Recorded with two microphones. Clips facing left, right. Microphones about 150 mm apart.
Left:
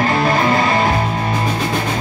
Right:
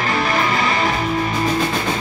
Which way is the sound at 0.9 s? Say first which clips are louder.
Left 1 dB; 30° left (ahead or behind).